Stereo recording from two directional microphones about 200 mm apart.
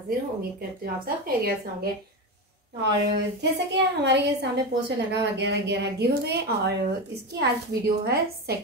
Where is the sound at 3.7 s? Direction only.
60° right (ahead or behind).